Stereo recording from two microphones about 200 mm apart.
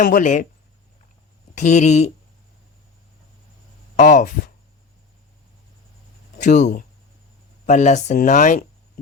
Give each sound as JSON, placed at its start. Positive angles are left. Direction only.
{"t": 0.0, "sound": "speech", "side_deg": 40}
{"t": 1.5, "sound": "speech", "side_deg": 35}
{"t": 3.9, "sound": "speech", "side_deg": 35}
{"t": 6.3, "sound": "speech", "side_deg": 35}